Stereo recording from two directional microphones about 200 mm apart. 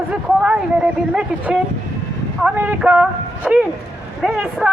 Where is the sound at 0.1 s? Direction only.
5° right (ahead or behind).